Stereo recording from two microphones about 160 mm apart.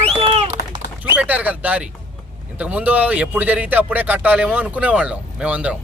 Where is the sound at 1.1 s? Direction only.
10° right (ahead or behind).